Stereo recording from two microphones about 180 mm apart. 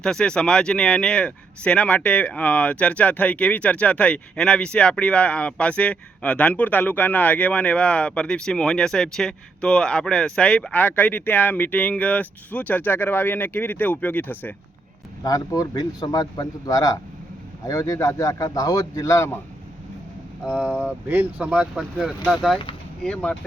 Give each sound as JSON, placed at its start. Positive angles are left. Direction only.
{"t": 0.0, "sound": "speech", "side_deg": 5}
{"t": 20.4, "sound": "speech", "side_deg": -5}